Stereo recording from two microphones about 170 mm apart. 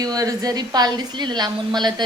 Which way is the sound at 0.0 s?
20° right (ahead or behind).